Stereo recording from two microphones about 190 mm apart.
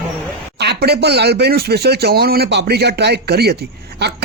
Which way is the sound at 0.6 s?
60° right (ahead or behind).